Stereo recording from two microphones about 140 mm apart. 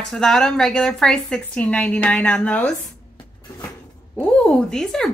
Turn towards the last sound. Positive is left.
turn(degrees=5)  # may be behind; listen again after turning